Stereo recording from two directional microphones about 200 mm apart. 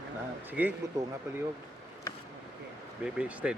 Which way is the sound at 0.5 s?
10° right (ahead or behind).